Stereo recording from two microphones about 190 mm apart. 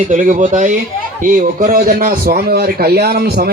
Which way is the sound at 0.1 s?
40° right (ahead or behind).